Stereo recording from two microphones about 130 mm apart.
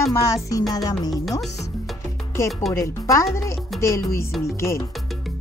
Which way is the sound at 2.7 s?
20° left (ahead or behind).